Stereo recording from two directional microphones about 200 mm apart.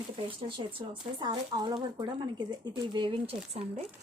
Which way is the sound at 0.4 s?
25° right (ahead or behind).